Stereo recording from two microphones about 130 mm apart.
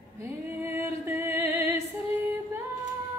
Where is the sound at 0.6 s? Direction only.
15° right (ahead or behind).